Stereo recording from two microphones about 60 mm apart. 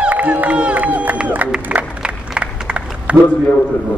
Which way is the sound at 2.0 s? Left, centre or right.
Centre.